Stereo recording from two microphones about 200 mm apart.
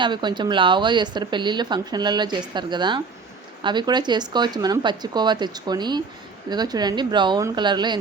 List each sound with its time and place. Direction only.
0.0 s speech: 20° right (ahead or behind)